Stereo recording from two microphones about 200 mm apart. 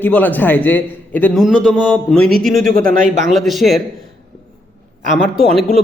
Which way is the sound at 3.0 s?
40° right (ahead or behind).